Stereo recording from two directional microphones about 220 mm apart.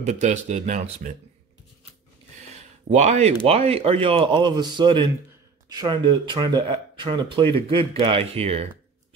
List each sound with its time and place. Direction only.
0.0 s speech: 30° right (ahead or behind)
2.5 s a sound: 30° right (ahead or behind)
3.4 s speech: 25° right (ahead or behind)